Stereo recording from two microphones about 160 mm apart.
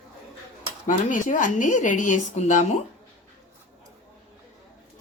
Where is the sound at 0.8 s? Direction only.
55° left (ahead or behind).